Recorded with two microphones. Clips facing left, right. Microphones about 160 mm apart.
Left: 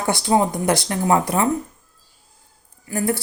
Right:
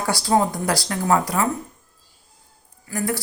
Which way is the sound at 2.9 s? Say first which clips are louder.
Left 3 dB; 25° left (ahead or behind).